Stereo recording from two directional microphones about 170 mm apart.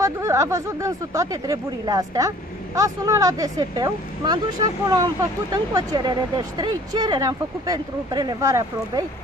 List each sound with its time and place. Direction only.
0.0 s speech: 15° right (ahead or behind)